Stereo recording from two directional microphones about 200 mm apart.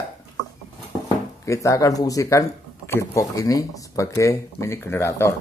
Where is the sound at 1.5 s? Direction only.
15° left (ahead or behind).